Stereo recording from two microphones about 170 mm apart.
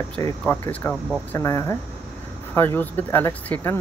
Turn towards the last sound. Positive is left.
turn(degrees=15)  # may be behind; listen again after turning